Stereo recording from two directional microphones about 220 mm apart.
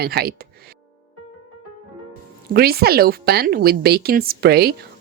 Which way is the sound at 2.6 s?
45° right (ahead or behind).